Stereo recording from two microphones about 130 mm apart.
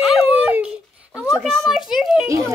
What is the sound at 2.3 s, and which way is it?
Speech, 25° right (ahead or behind).